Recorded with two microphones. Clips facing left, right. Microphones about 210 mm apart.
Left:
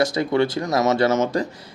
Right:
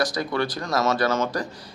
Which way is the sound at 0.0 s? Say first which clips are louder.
Left 5 dB; 25° left (ahead or behind).